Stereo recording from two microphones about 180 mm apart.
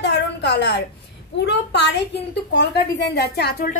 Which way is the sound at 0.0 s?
70° left (ahead or behind).